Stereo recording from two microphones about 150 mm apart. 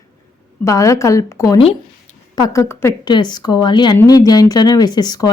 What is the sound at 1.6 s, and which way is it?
Speech, 40° left (ahead or behind).